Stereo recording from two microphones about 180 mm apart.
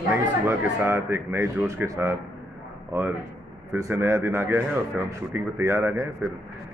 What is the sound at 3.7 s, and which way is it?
A man's voice, 15° right (ahead or behind).